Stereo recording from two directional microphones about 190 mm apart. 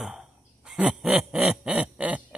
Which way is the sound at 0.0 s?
Centre (ahead or behind).